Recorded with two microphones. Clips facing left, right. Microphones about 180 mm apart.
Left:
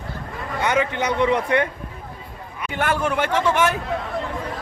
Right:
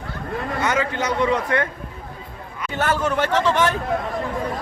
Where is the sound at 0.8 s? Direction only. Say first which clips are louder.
Left 1 dB; 15° left (ahead or behind).